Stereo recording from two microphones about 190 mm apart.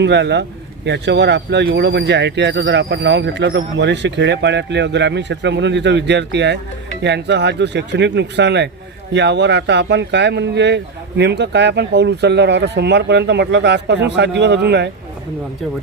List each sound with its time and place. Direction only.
0.0 s speech: 65° right (ahead or behind)